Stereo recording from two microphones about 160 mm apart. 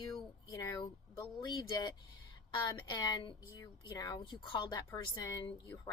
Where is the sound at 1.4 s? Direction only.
25° left (ahead or behind).